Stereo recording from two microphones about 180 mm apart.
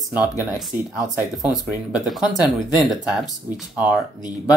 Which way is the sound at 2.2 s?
25° left (ahead or behind).